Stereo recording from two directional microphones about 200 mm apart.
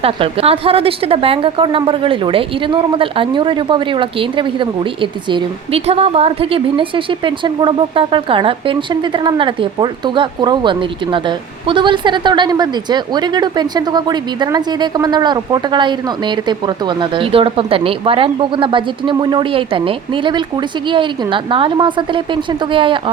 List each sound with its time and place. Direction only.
0.0 s a woman's voice: 30° right (ahead or behind)